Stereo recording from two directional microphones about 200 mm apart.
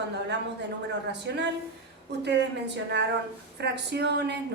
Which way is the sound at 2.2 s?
60° right (ahead or behind).